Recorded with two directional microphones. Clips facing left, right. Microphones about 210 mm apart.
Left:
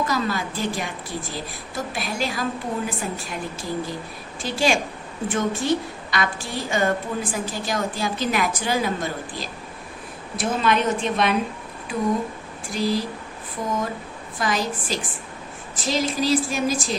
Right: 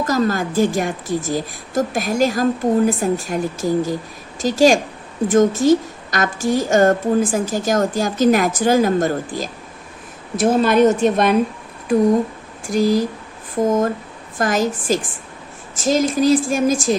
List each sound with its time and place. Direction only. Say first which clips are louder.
0.0 s a woman's voice: right 6 dB; 45° right (ahead or behind)
12.6 s a woman's voice: right 7 dB; 45° right (ahead or behind)